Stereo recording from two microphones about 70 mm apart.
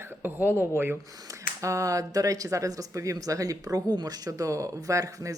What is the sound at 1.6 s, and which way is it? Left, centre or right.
Speech, right.